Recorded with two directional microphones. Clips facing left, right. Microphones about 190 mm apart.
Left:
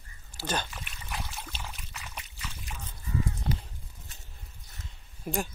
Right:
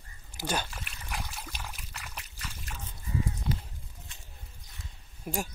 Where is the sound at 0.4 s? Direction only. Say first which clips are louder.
Even; 10° right (ahead or behind).